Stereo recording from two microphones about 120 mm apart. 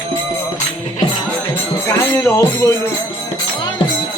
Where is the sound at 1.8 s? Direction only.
25° left (ahead or behind).